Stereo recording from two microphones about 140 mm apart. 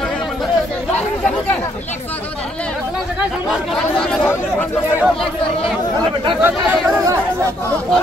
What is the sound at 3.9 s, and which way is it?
Speech, 5° left (ahead or behind).